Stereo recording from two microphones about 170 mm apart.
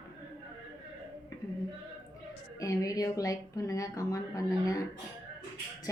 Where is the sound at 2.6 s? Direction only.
20° left (ahead or behind).